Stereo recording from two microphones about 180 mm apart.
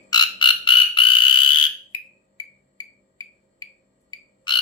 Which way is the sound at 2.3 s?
20° left (ahead or behind).